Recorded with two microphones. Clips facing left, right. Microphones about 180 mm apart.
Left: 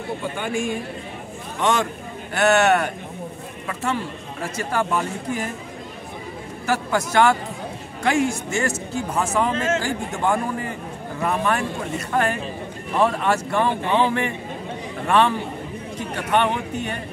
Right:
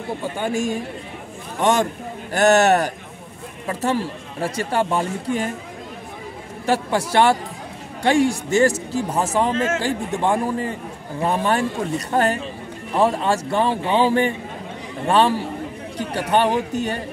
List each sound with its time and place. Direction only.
0.4 s speech: 40° right (ahead or behind)
6.6 s speech: 30° right (ahead or behind)